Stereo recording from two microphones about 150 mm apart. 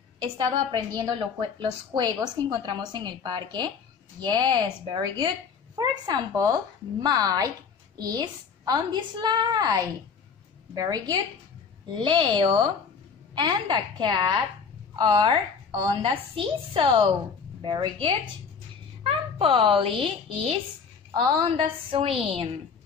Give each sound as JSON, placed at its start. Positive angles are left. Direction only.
{"t": 0.2, "sound": "a woman's voice", "side_deg": -30}